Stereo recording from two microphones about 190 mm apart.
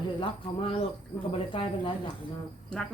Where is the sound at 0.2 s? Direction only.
30° left (ahead or behind).